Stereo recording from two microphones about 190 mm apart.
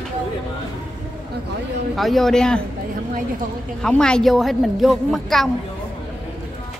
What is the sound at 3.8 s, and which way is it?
Speech, 5° left (ahead or behind).